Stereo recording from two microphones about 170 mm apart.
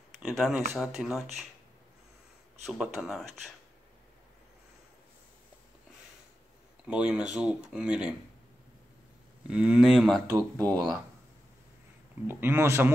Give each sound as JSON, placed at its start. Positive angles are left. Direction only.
{"t": 0.2, "sound": "speech", "side_deg": 0}
{"t": 2.6, "sound": "speech", "side_deg": 0}
{"t": 6.9, "sound": "speech", "side_deg": -5}
{"t": 9.5, "sound": "speech", "side_deg": -5}
{"t": 10.3, "sound": "speech", "side_deg": -20}
{"t": 12.3, "sound": "speech", "side_deg": -10}